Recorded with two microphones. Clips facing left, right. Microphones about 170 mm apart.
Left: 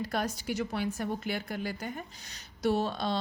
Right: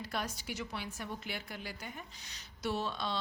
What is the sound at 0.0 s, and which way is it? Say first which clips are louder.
A woman's voice: left 7 dB; 45° left (ahead or behind).